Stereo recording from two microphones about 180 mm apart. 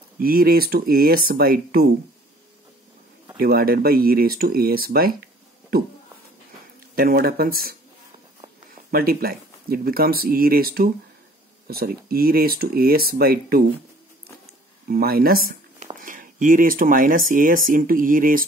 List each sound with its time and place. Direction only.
0.2 s speech: 55° right (ahead or behind)
3.4 s speech: 55° right (ahead or behind)
7.0 s speech: 55° right (ahead or behind)
8.9 s speech: 55° right (ahead or behind)
14.9 s speech: 55° right (ahead or behind)